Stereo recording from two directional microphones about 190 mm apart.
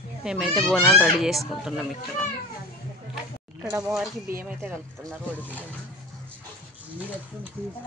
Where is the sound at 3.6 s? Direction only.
5° right (ahead or behind).